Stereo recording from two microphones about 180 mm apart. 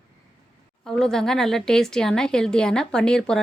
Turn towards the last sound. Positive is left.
turn(degrees=5)  # may be behind; listen again after turning